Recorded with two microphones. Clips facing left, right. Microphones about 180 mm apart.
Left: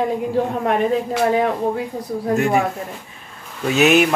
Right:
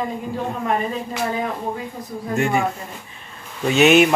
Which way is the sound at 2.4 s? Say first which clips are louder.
Left 1 dB; centre (ahead or behind).